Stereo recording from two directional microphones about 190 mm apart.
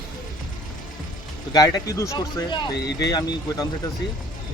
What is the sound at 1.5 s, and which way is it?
Speech, 20° left (ahead or behind).